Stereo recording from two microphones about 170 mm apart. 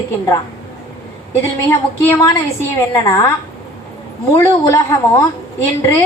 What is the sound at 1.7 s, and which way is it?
Speech, 15° left (ahead or behind).